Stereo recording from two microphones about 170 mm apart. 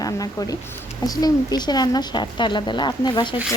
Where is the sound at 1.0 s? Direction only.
20° left (ahead or behind).